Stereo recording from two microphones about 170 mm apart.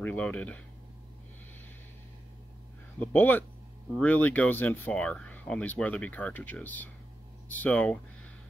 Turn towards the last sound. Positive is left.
turn(degrees=5)  # may be behind; listen again after turning